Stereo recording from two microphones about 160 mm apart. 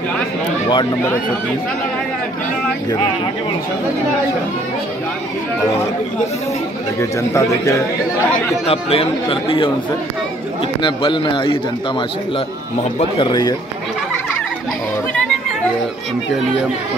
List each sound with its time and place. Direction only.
7.0 s speech: 20° left (ahead or behind)
8.6 s speech: 35° left (ahead or behind)
10.8 s speech: 30° left (ahead or behind)
13.2 s speech: 25° left (ahead or behind)